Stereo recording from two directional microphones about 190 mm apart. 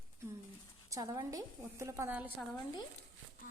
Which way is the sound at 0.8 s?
20° right (ahead or behind).